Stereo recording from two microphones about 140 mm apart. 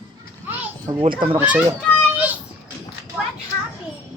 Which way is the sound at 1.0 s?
40° right (ahead or behind).